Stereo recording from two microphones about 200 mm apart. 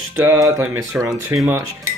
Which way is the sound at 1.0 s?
Centre (ahead or behind).